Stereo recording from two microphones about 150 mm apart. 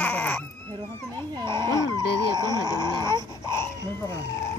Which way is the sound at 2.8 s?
30° right (ahead or behind).